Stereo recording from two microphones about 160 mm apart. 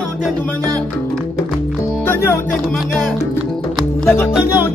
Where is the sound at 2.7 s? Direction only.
5° left (ahead or behind).